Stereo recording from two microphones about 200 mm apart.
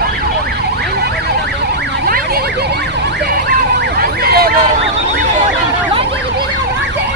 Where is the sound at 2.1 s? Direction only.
50° right (ahead or behind).